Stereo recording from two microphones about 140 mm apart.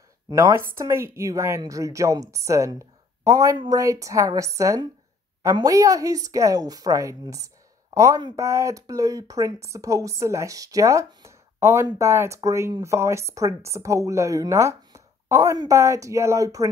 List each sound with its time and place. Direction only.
0.3 s speech: 20° right (ahead or behind)